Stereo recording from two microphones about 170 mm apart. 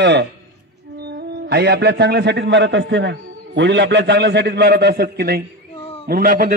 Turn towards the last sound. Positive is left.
turn(degrees=-55)  # may be behind; listen again after turning